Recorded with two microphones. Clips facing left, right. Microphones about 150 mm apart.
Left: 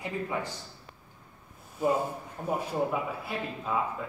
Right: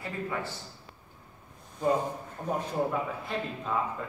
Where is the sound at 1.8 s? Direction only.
10° left (ahead or behind).